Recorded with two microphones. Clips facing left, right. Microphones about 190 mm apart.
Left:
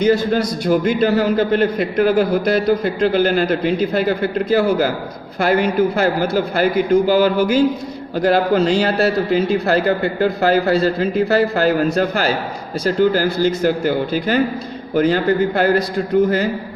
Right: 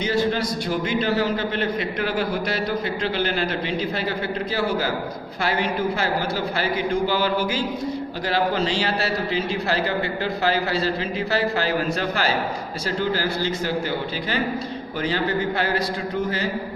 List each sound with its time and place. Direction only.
0.0 s a man's voice: 45° left (ahead or behind)